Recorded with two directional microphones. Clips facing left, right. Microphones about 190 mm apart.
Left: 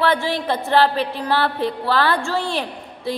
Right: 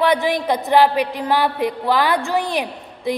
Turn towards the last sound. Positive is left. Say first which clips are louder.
# right 3 dB
turn(degrees=-15)  # may be behind; listen again after turning